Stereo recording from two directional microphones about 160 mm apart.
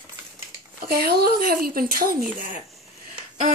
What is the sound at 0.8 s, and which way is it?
Speech, 75° right (ahead or behind).